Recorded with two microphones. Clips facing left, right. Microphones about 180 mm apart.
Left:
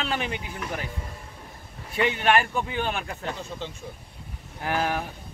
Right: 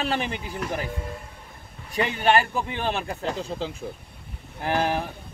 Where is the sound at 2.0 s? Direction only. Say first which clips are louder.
Right 1 dB; 35° right (ahead or behind).